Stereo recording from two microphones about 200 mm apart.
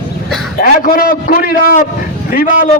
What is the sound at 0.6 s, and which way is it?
A man's voice, 45° left (ahead or behind).